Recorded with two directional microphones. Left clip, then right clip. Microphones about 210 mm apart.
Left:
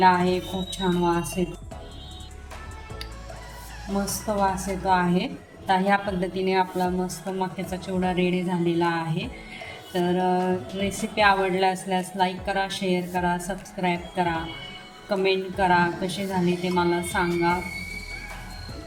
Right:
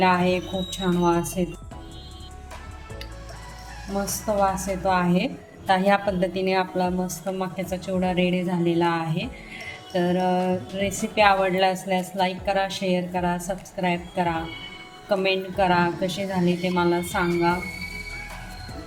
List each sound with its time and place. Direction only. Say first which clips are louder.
0.0 s a woman's voice: left 1 dB; 20° right (ahead or behind)
3.8 s a woman's voice: right 1 dB; centre (ahead or behind)
4.4 s a woman's voice: even; 15° right (ahead or behind)